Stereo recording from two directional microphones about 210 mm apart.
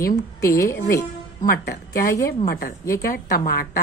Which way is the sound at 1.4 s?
45° left (ahead or behind).